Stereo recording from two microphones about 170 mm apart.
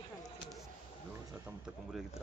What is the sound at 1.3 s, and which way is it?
Speech, 10° right (ahead or behind).